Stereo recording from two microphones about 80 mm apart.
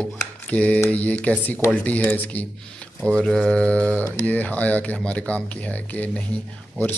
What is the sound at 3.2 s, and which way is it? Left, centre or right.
Speech, centre.